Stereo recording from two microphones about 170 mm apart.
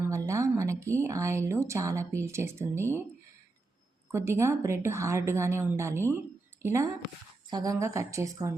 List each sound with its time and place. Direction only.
0.0 s speech: 15° right (ahead or behind)
4.1 s a woman's voice: 15° right (ahead or behind)